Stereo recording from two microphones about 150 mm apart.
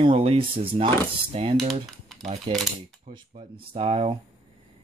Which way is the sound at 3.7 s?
40° right (ahead or behind).